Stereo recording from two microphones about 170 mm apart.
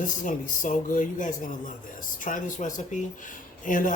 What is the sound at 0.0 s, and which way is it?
Speech, 50° left (ahead or behind).